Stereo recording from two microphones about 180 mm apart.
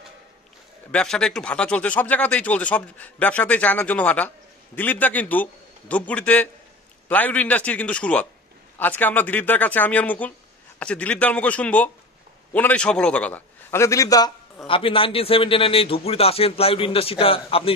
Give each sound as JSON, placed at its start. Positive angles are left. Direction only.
{"t": 0.9, "sound": "speech", "side_deg": 5}
{"t": 14.7, "sound": "a man's voice", "side_deg": 30}